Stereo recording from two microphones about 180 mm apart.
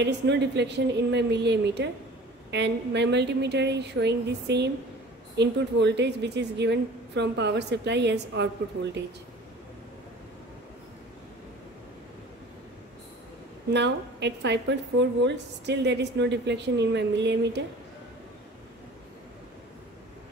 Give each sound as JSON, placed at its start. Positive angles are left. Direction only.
{"t": 0.0, "sound": "a woman's voice", "side_deg": -75}
{"t": 13.7, "sound": "a woman's voice", "side_deg": -75}